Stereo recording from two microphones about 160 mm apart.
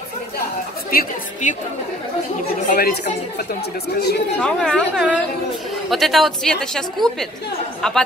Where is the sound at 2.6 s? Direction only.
60° left (ahead or behind); by 4.1 s 80° left.